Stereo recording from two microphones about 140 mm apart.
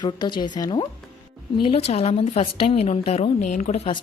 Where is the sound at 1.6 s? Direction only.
45° left (ahead or behind).